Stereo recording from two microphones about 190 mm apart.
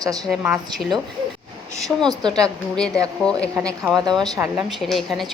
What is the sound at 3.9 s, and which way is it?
Speech, 20° right (ahead or behind).